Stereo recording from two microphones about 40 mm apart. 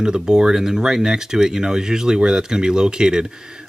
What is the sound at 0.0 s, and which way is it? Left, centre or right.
Speech, centre.